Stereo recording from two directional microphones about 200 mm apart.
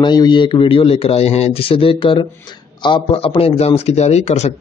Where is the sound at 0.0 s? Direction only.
20° left (ahead or behind).